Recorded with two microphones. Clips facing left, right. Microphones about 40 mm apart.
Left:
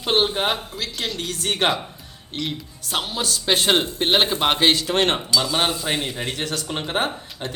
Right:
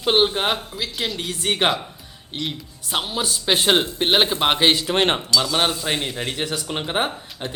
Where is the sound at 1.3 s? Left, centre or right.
Centre.